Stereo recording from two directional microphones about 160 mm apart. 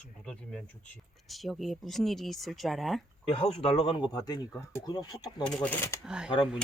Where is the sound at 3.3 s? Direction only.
35° left (ahead or behind).